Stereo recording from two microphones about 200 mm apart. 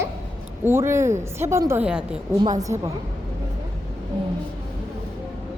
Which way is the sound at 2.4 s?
20° right (ahead or behind).